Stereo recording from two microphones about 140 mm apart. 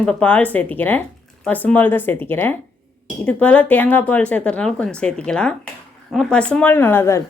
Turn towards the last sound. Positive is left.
turn(degrees=15)  # may be behind; listen again after turning